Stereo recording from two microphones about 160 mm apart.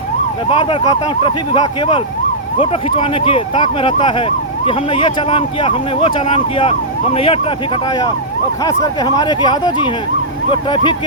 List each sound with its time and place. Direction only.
0.5 s speech: 35° left (ahead or behind)